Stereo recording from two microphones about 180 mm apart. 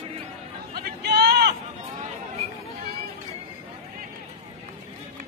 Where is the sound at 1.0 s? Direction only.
65° right (ahead or behind).